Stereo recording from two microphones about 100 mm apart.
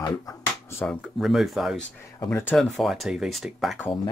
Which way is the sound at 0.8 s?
5° left (ahead or behind).